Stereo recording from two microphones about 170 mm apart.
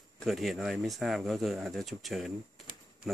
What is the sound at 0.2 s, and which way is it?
Speech, centre (ahead or behind).